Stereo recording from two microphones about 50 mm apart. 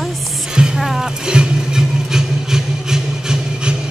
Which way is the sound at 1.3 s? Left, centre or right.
Centre.